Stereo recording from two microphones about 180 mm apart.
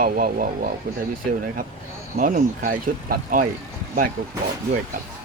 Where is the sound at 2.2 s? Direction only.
50° right (ahead or behind).